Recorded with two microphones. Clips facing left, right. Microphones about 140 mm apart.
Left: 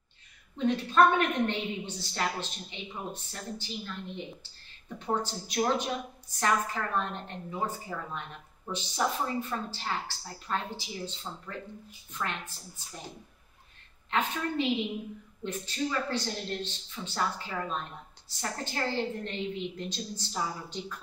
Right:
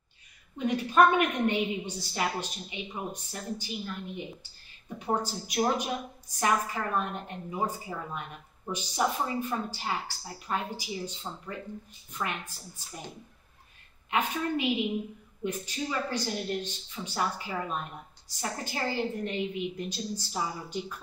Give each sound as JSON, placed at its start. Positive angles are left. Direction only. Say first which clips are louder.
{"t": 0.6, "sound": "a woman's voice", "louder": "right 1 dB", "side_deg": -10}
{"t": 14.1, "sound": "a woman's voice", "louder": "right 1 dB", "side_deg": -10}